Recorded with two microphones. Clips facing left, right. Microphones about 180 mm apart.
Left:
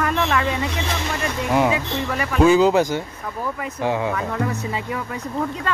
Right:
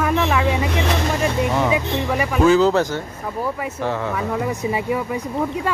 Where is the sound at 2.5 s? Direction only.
15° left (ahead or behind).